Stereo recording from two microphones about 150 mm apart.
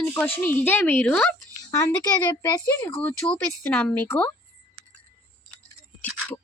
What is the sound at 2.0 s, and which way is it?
Speech, 25° left (ahead or behind).